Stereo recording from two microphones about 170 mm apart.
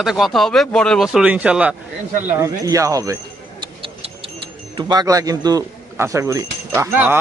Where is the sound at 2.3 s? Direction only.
20° right (ahead or behind).